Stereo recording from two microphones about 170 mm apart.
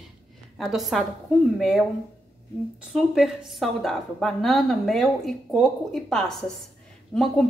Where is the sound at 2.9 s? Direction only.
Centre (ahead or behind).